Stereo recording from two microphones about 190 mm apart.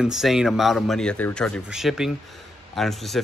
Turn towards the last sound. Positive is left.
turn(degrees=0)  # may be behind; listen again after turning